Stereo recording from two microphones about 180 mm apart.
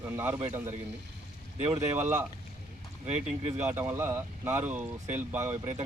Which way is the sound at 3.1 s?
35° right (ahead or behind).